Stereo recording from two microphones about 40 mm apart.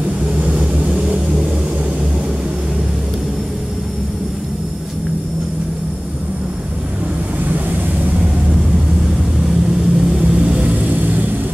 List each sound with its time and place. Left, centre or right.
0.4 s vehicle: right
9.9 s vehicle: centre
10.4 s vehicle: right
10.9 s vehicle: right